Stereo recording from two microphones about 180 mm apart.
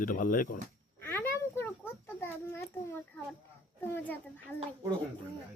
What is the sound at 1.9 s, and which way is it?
A child's voice, 10° left (ahead or behind).